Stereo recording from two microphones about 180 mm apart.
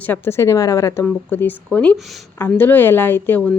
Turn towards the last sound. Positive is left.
turn(degrees=10)  # may be behind; listen again after turning